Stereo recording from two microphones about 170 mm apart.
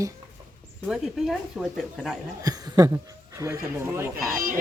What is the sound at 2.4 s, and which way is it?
Speech, 20° right (ahead or behind).